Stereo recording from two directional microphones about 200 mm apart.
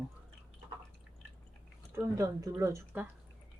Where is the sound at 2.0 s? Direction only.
15° right (ahead or behind).